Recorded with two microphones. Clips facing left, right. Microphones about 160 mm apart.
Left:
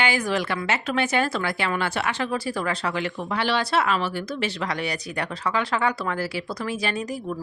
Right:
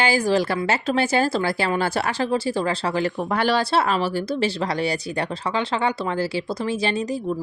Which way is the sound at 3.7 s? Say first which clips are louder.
Right 3 dB; 35° right (ahead or behind).